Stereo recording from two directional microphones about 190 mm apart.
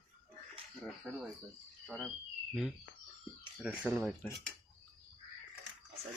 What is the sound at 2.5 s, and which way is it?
Speech, centre (ahead or behind).